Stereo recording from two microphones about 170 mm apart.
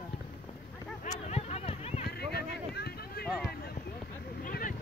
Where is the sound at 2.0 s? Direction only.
75° left (ahead or behind).